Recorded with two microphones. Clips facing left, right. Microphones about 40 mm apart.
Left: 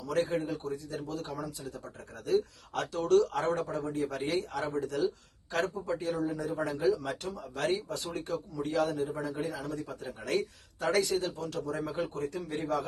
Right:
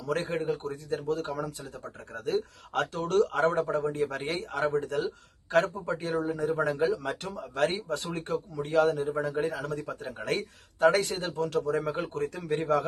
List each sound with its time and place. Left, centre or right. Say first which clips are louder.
0.0 s speech: right 1 dB; right